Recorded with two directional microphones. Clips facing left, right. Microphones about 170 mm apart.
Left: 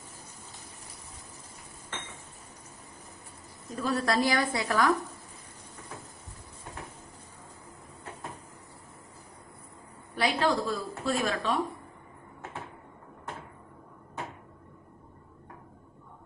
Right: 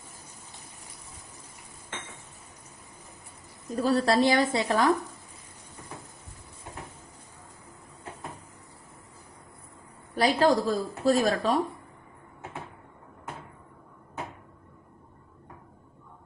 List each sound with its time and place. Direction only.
3.7 s a woman's voice: 35° right (ahead or behind)
10.1 s speech: 40° right (ahead or behind)